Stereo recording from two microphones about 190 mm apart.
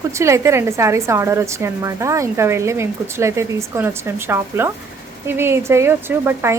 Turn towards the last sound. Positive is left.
turn(degrees=-10)  # may be behind; listen again after turning